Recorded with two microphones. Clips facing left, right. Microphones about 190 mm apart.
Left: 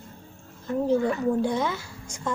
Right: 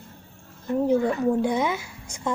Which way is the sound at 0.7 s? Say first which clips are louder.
Right 2 dB; 20° right (ahead or behind).